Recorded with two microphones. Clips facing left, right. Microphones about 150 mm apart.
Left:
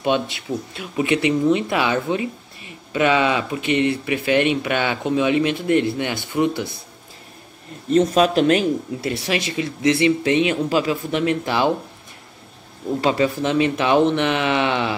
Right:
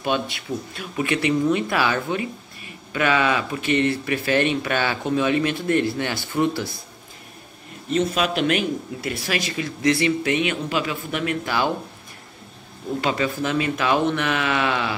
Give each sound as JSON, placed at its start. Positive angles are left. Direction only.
{"t": 0.0, "sound": "speech", "side_deg": 25}
{"t": 7.9, "sound": "speech", "side_deg": 40}
{"t": 13.0, "sound": "speech", "side_deg": 30}